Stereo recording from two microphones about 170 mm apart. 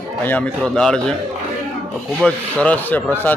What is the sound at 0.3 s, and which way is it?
Speech, 5° left (ahead or behind).